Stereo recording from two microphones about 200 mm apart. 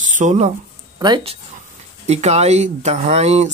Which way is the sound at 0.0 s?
40° right (ahead or behind).